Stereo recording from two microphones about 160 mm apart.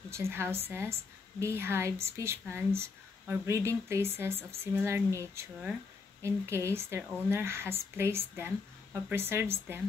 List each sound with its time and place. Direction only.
0.1 s speech: 15° right (ahead or behind)